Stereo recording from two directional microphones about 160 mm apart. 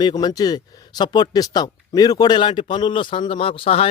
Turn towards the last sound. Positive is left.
turn(degrees=35)  # may be behind; listen again after turning